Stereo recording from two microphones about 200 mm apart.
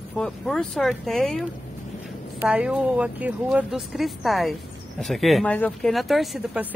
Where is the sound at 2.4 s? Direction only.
5° right (ahead or behind).